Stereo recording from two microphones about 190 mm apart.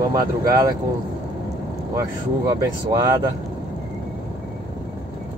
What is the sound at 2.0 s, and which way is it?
Speech, 20° right (ahead or behind).